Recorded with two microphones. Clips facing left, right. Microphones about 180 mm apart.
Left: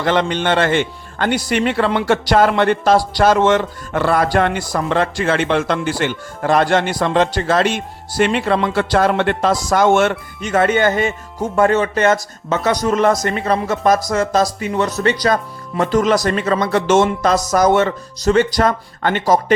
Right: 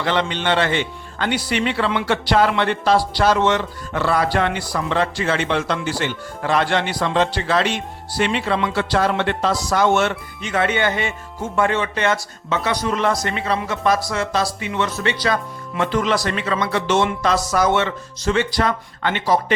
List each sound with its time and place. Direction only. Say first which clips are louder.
0.0 s a man's voice: left 4 dB; 45° left (ahead or behind)